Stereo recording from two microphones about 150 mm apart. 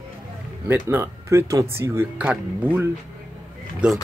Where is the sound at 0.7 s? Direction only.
15° right (ahead or behind).